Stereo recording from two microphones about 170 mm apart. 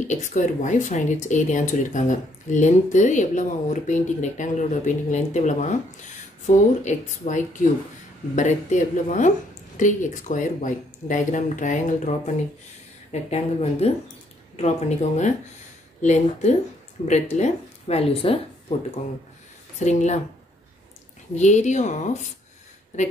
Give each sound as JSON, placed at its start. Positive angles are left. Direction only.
{"t": 0.0, "sound": "speech", "side_deg": 45}
{"t": 13.1, "sound": "speech", "side_deg": 40}
{"t": 19.8, "sound": "speech", "side_deg": 45}
{"t": 21.4, "sound": "speech", "side_deg": 45}